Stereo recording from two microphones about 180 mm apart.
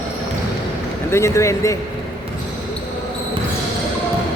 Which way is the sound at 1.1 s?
15° left (ahead or behind).